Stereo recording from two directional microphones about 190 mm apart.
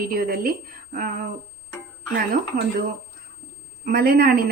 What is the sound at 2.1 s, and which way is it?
Speech, 50° right (ahead or behind).